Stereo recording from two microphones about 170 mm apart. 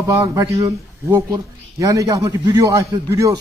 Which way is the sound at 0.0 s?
20° right (ahead or behind).